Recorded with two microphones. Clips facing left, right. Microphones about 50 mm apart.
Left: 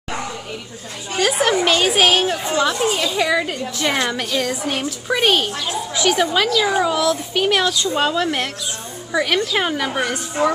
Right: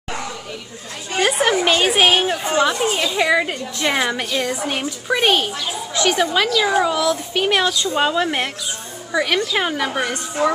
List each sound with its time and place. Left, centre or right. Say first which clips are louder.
1.4 s a woman's voice: left 1 dB; centre
9.1 s a woman's voice: even; centre